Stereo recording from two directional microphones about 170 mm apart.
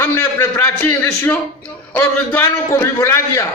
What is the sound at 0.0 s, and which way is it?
A man's voice, 15° left (ahead or behind).